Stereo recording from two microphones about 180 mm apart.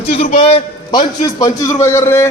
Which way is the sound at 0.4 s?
35° left (ahead or behind).